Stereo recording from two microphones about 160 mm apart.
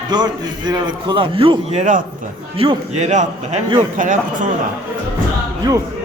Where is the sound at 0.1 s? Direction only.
25° right (ahead or behind); by 4.4 s 55° right (ahead or behind).